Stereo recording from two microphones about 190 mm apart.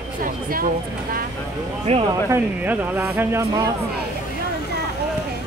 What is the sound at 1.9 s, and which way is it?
Speech, 35° right (ahead or behind).